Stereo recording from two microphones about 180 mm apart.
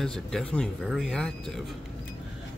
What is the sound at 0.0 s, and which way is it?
A man's voice, 5° left (ahead or behind).